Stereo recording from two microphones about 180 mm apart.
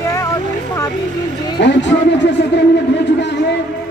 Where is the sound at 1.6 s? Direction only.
80° left.